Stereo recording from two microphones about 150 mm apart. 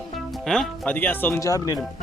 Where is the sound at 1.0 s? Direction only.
10° left (ahead or behind).